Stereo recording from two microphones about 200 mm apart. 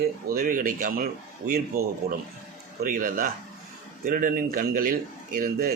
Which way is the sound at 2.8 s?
45° right (ahead or behind).